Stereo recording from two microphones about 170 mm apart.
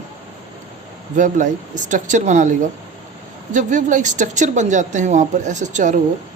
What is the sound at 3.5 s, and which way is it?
A woman's voice, 50° right (ahead or behind).